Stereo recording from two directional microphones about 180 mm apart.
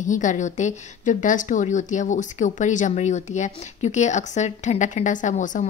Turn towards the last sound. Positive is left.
turn(degrees=45)  # may be behind; listen again after turning